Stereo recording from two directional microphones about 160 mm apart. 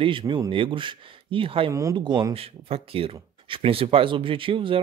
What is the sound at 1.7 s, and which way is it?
Speech, 20° right (ahead or behind).